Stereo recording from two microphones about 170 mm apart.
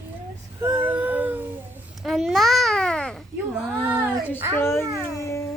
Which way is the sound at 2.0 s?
Centre (ahead or behind).